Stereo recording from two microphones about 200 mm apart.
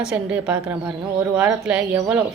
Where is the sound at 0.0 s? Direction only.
5° right (ahead or behind).